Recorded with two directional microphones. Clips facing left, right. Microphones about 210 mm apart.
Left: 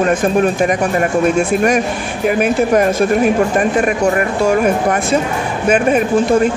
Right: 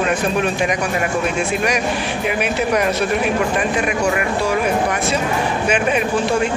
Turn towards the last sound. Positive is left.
turn(degrees=45)  # may be behind; listen again after turning